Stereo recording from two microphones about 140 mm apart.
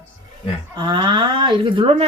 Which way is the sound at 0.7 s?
35° right (ahead or behind).